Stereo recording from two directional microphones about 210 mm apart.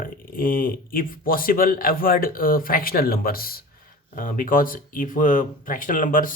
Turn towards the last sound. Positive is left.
turn(degrees=40)  # may be behind; listen again after turning